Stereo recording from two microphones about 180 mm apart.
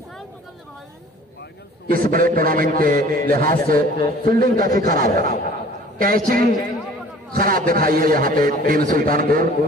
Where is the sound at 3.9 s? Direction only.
25° left (ahead or behind).